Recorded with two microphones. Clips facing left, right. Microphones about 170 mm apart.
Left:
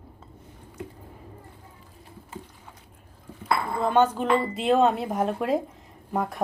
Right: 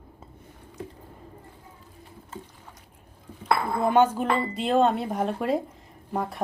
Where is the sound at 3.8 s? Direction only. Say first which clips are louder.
Right 1 dB; 10° right (ahead or behind).